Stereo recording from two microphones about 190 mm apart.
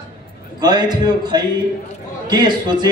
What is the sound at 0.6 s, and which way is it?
A man's voice, 20° right (ahead or behind).